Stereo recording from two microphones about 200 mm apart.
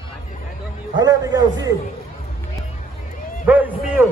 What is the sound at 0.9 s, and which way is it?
Speech, 20° right (ahead or behind).